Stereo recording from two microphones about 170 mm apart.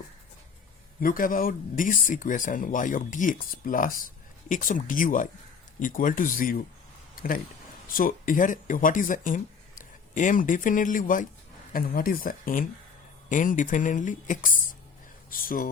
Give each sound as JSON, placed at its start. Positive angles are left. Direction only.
{"t": 1.0, "sound": "speech", "side_deg": 55}